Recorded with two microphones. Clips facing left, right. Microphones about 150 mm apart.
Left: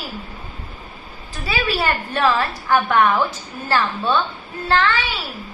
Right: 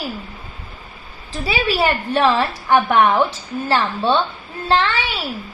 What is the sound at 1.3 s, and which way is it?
A woman's voice, 25° right (ahead or behind).